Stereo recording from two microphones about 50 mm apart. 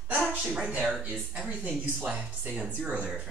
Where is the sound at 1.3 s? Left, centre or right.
Right.